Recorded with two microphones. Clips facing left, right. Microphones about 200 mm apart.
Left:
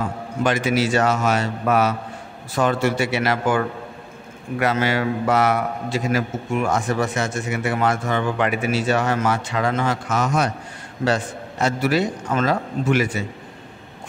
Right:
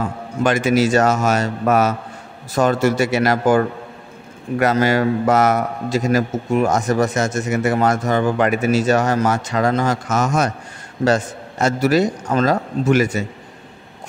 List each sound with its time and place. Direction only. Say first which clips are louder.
0.4 s a man's voice: right 4 dB; 50° right (ahead or behind)